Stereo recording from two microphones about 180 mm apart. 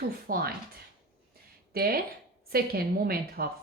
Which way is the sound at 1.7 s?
55° right (ahead or behind).